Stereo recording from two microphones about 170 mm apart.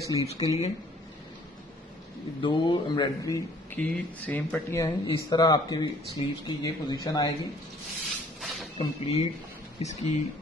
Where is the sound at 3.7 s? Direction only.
10° left (ahead or behind).